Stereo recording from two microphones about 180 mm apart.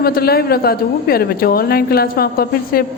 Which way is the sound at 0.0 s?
60° left (ahead or behind).